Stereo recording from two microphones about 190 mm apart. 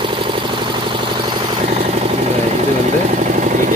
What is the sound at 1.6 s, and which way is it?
Vehicle, 30° right (ahead or behind).